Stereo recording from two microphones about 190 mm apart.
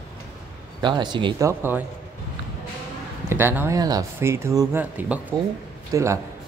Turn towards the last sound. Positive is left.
turn(degrees=-15)  # may be behind; listen again after turning